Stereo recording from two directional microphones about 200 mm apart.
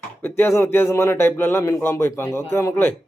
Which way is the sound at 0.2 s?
10° left (ahead or behind).